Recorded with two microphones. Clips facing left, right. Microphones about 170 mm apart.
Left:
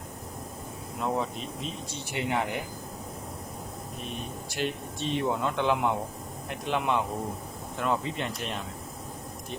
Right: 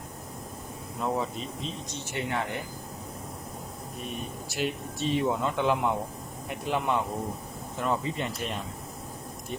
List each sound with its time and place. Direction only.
1.0 s speech: centre (ahead or behind)
2.0 s speech: 15° left (ahead or behind)
4.1 s speech: 5° right (ahead or behind)